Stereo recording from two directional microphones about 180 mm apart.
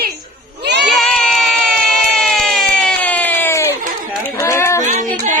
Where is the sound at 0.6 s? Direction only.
70° right (ahead or behind).